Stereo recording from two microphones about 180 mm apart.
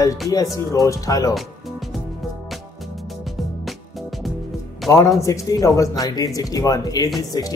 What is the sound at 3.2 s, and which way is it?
Music, centre (ahead or behind).